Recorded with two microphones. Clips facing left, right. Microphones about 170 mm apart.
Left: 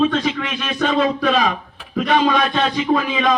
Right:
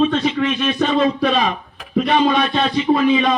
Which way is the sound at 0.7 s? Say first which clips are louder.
Left 1 dB; 35° right (ahead or behind).